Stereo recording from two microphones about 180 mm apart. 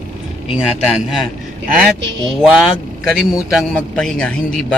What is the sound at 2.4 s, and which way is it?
A man's voice, centre (ahead or behind).